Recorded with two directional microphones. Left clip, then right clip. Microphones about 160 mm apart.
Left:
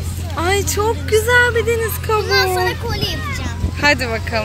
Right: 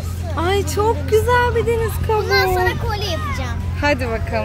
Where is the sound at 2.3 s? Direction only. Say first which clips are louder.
Even; 40° right (ahead or behind).